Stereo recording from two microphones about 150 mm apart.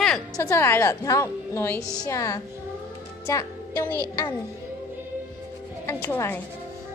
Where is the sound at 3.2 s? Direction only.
20° left (ahead or behind).